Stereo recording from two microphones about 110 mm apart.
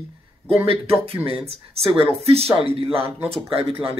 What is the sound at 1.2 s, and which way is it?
Speech, 60° right (ahead or behind).